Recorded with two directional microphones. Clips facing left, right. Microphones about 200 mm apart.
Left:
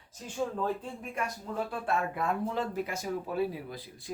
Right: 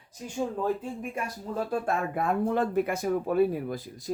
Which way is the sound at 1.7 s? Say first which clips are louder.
Right 5 dB; 45° right (ahead or behind).